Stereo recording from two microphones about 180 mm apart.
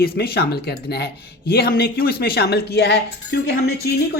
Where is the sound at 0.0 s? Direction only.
60° left (ahead or behind).